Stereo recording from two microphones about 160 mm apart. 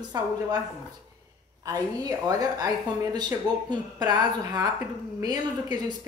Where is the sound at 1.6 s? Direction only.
25° right (ahead or behind).